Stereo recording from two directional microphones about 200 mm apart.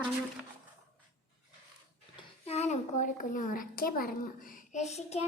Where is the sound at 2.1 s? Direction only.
30° left (ahead or behind).